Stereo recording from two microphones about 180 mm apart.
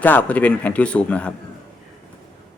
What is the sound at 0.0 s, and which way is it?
Speech, 10° left (ahead or behind).